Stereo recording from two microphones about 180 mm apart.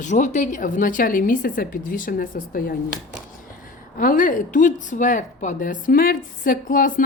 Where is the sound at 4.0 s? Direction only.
50° left (ahead or behind).